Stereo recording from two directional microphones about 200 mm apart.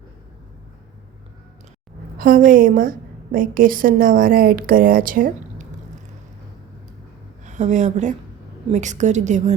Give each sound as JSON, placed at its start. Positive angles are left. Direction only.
{"t": 2.1, "sound": "a woman's voice", "side_deg": -45}
{"t": 7.4, "sound": "a woman's voice", "side_deg": -35}